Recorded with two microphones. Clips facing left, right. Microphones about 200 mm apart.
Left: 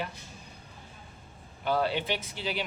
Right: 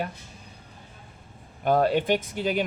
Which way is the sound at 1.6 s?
50° right (ahead or behind).